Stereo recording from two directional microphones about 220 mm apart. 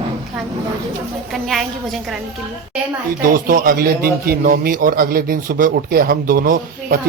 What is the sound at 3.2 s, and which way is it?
A man's voice, 40° right (ahead or behind).